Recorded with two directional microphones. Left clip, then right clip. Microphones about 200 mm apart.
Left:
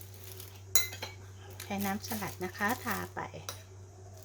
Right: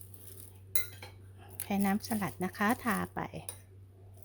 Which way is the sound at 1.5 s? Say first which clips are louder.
Right 2 dB; 50° right (ahead or behind).